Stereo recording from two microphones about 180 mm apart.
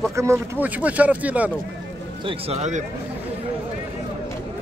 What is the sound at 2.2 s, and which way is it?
Speech, 30° right (ahead or behind).